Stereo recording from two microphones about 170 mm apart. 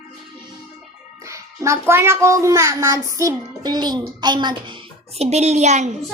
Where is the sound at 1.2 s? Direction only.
15° right (ahead or behind); by 5.9 s 45° right (ahead or behind).